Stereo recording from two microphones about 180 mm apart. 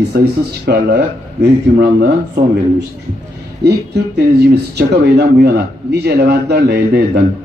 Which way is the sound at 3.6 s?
65° right (ahead or behind).